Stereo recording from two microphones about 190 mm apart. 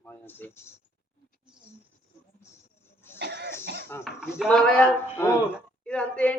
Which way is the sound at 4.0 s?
5° right (ahead or behind).